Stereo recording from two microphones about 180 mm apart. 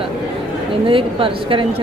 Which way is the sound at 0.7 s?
30° right (ahead or behind).